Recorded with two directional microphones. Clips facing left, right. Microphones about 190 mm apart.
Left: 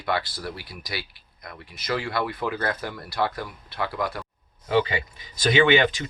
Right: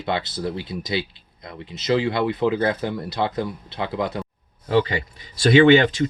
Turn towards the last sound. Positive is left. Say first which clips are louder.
# right 6 dB
turn(degrees=-35)  # may be behind; listen again after turning